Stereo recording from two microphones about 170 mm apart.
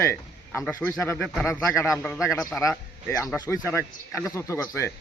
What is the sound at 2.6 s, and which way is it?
A man's voice, 15° left (ahead or behind).